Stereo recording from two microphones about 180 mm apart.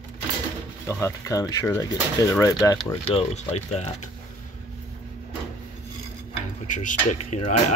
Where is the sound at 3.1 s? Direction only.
35° left (ahead or behind).